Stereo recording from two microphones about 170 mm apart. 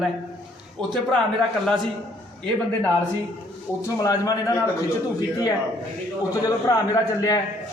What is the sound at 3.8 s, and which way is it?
Speech, 20° left (ahead or behind).